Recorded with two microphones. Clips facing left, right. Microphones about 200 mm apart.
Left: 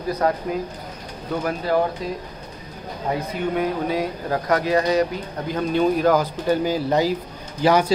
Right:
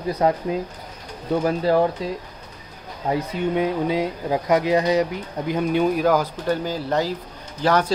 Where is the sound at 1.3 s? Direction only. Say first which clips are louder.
Right 3 dB; 30° right (ahead or behind).